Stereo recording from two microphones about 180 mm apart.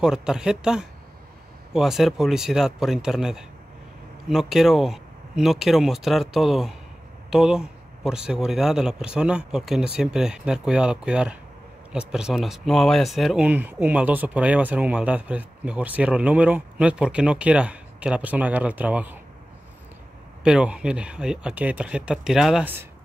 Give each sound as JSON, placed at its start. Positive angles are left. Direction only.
{"t": 0.0, "sound": "speech", "side_deg": -5}
{"t": 20.4, "sound": "speech", "side_deg": -5}